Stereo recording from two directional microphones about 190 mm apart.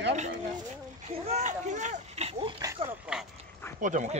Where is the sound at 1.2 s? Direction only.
35° right (ahead or behind).